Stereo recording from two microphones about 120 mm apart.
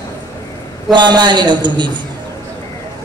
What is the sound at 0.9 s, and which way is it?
Speech, 40° right (ahead or behind).